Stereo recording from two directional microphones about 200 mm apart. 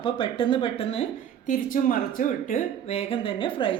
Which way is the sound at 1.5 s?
40° left (ahead or behind).